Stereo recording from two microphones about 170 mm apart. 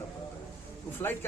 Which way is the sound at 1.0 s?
15° left (ahead or behind).